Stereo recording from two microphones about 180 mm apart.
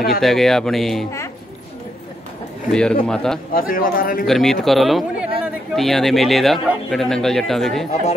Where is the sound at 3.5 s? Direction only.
50° left (ahead or behind).